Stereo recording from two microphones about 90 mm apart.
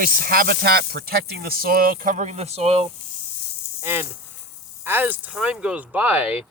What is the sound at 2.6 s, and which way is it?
Speech, 90° right.